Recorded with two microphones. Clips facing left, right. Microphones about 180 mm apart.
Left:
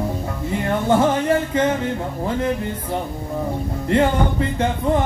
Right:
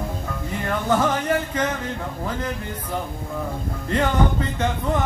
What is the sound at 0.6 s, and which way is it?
Music, 25° left (ahead or behind).